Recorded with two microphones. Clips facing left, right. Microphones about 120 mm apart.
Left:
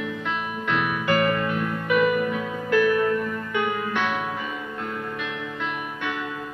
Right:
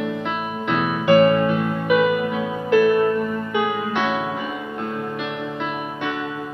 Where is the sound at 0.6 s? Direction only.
25° right (ahead or behind).